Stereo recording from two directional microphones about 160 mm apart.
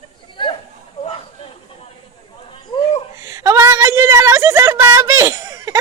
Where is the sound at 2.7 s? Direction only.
30° left (ahead or behind).